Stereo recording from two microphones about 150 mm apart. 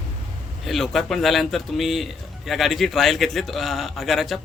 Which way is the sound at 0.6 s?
Centre (ahead or behind).